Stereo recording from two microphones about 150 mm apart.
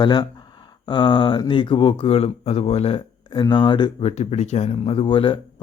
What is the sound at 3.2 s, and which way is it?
Speech, 30° left (ahead or behind).